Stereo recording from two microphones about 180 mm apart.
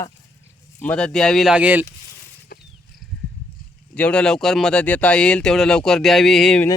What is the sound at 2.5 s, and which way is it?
Wild animals, 60° left (ahead or behind).